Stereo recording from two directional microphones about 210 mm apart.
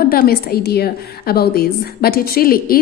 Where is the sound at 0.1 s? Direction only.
45° left (ahead or behind).